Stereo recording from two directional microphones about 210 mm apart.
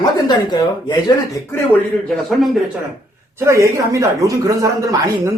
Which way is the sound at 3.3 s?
15° right (ahead or behind).